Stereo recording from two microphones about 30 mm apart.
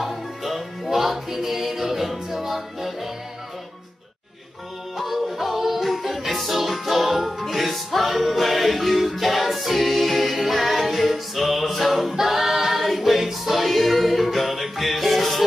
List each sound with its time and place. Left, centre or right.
0.0 s music: centre
4.9 s music: centre